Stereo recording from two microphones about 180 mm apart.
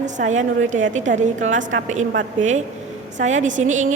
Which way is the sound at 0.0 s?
45° right (ahead or behind).